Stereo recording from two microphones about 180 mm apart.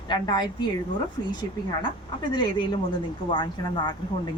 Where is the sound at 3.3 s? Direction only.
25° left (ahead or behind).